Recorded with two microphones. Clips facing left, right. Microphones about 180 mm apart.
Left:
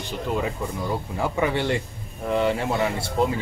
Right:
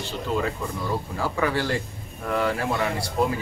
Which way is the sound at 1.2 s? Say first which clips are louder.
Left 2 dB; 20° left (ahead or behind).